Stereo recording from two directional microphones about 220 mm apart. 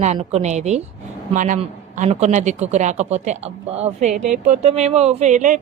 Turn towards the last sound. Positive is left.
turn(degrees=-35)  # may be behind; listen again after turning